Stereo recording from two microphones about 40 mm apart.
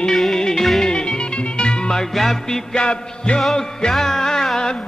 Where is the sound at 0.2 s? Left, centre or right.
Centre.